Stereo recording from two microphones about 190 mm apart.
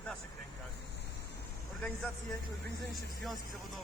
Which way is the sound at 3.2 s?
Centre (ahead or behind).